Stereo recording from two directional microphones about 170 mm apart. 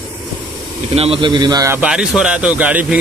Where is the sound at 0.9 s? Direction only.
35° right (ahead or behind).